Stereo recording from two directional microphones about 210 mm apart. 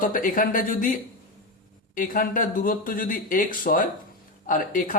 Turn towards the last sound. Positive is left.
turn(degrees=40)  # may be behind; listen again after turning